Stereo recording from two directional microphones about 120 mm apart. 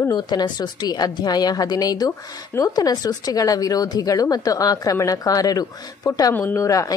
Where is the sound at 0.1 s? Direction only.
35° left (ahead or behind).